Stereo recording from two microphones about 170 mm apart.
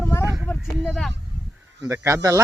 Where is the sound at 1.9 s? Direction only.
15° right (ahead or behind).